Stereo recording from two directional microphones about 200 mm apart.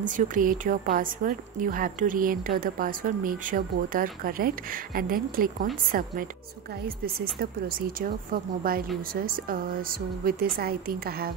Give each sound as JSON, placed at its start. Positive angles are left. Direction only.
{"t": 0.0, "sound": "a woman's voice", "side_deg": -40}
{"t": 7.3, "sound": "a woman's voice", "side_deg": -45}